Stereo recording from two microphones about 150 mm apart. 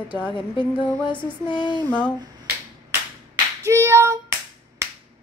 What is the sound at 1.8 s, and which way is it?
Speech, 10° left (ahead or behind).